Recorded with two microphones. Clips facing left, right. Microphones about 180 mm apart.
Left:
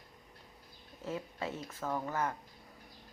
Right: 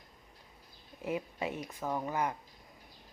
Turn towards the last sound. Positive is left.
turn(degrees=-15)  # may be behind; listen again after turning